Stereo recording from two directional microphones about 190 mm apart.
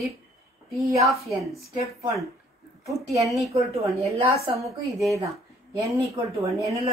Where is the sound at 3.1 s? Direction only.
15° right (ahead or behind).